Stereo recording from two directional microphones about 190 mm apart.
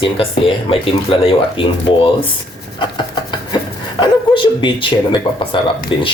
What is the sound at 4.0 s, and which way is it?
Speech, 25° left (ahead or behind).